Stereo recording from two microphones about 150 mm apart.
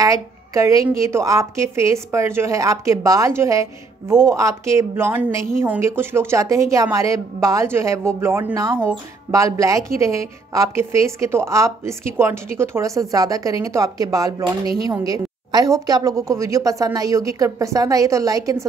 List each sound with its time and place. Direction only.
0.0 s a woman's voice: 20° right (ahead or behind)